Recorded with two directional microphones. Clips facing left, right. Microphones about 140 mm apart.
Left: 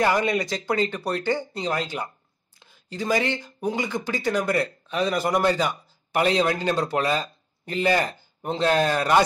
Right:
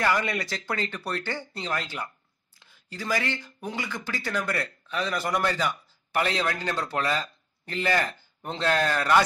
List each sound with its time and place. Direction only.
0.0 s speech: 20° left (ahead or behind)